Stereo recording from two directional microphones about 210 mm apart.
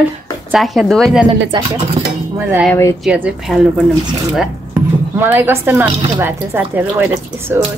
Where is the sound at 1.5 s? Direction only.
20° right (ahead or behind).